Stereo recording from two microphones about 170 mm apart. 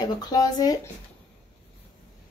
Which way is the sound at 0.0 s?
25° left (ahead or behind).